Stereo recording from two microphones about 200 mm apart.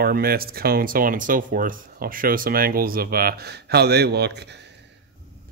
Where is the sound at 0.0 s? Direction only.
50° right (ahead or behind).